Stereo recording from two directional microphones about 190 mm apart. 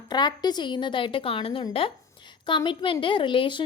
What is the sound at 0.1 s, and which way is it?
A woman's voice, 20° left (ahead or behind).